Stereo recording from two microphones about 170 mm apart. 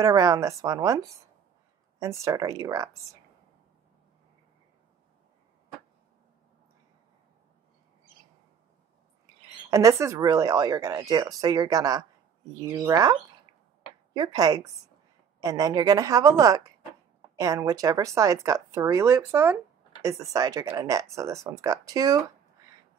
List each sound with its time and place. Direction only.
0.0 s speech: 20° right (ahead or behind)
9.7 s speech: 20° right (ahead or behind)